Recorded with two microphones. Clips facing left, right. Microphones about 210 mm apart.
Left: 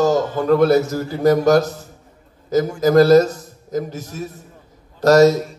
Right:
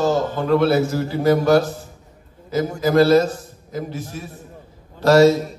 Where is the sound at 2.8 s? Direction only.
40° left (ahead or behind).